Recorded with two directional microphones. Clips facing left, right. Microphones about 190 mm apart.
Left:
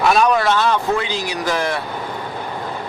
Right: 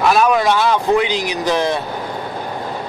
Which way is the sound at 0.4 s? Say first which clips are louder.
Right 2 dB; 15° right (ahead or behind).